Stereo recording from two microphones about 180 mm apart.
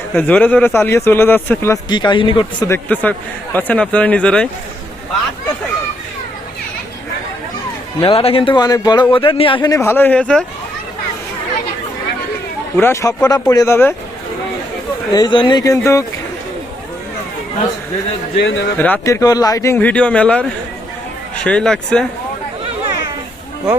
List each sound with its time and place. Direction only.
0.1 s a man's voice: 10° left (ahead or behind)
1.9 s a man's voice: 25° left (ahead or behind)
2.6 s a man's voice: 10° left (ahead or behind)
8.0 s a man's voice: 30° left (ahead or behind); by 10.4 s 5° left (ahead or behind)
12.7 s a man's voice: 15° left (ahead or behind)
15.1 s a man's voice: 25° left (ahead or behind)
18.4 s speech: 90° left
18.8 s a man's voice: 10° left (ahead or behind)